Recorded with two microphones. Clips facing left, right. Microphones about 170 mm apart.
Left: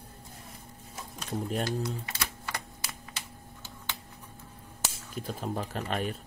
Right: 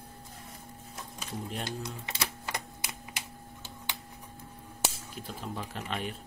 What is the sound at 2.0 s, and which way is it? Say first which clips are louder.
Typewriter: right 1 dB; 20° right (ahead or behind).